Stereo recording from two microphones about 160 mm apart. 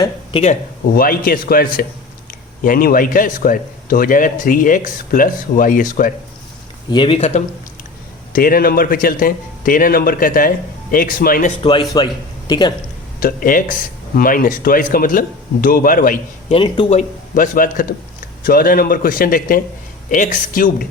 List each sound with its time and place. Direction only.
0.0 s a sound: 30° left (ahead or behind)
0.9 s a man's voice: 65° left (ahead or behind)
6.9 s speech: 30° left (ahead or behind)
8.3 s a man's voice: 60° left (ahead or behind)
11.6 s a man's voice: 30° left (ahead or behind)
13.1 s a man's voice: 60° left (ahead or behind)
16.5 s speech: 30° left (ahead or behind)
16.9 s a man's voice: 50° left (ahead or behind)